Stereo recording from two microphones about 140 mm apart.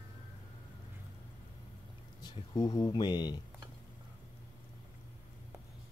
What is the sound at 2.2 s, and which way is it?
Speech, 30° left (ahead or behind).